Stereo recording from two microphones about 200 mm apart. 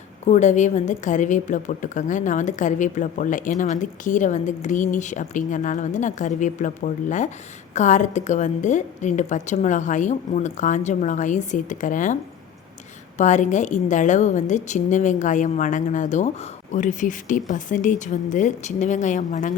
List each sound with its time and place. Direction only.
0.3 s a woman's voice: 35° left (ahead or behind)
13.1 s a woman's voice: 35° left (ahead or behind)